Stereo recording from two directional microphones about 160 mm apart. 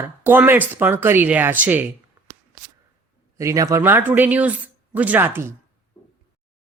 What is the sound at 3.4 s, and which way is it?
Speech, 20° right (ahead or behind).